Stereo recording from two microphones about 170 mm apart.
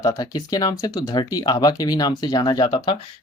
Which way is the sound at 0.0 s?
20° left (ahead or behind).